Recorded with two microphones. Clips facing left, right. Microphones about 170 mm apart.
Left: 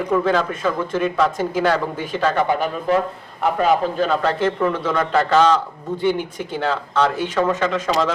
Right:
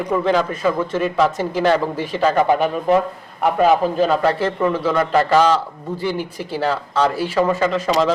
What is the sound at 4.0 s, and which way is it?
A man's voice, 10° right (ahead or behind).